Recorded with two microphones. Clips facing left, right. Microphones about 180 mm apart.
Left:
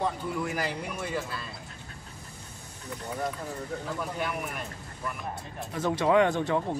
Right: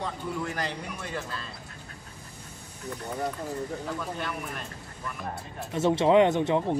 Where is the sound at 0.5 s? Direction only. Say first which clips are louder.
Left 1 dB; 10° left (ahead or behind).